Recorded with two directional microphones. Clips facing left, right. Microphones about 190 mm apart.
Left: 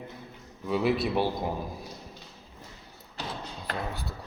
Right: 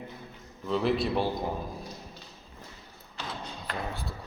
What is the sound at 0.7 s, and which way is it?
Speech, 5° left (ahead or behind).